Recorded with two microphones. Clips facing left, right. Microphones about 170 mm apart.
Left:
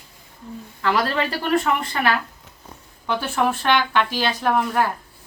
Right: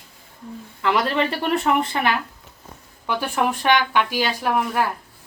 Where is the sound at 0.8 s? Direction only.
20° right (ahead or behind).